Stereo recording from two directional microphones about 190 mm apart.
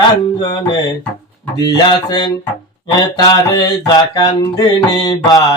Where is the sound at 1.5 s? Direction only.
20° left (ahead or behind).